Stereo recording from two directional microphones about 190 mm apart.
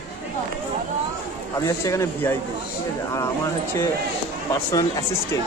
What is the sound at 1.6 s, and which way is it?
Speech, 15° left (ahead or behind).